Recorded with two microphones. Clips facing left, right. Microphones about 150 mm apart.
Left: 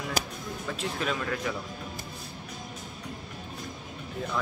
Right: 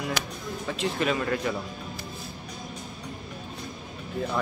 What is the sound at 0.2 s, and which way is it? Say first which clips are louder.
Music: left 1 dB; 40° left (ahead or behind).